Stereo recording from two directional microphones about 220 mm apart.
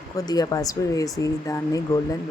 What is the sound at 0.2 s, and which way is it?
Speech, 15° left (ahead or behind).